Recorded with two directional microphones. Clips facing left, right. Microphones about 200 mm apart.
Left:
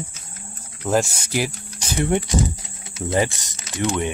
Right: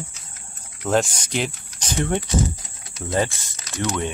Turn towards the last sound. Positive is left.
turn(degrees=20)  # may be behind; listen again after turning